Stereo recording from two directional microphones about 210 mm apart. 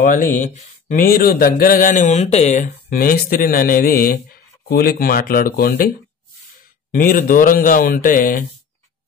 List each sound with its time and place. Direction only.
0.0 s speech: 40° left (ahead or behind)
6.9 s speech: 40° left (ahead or behind)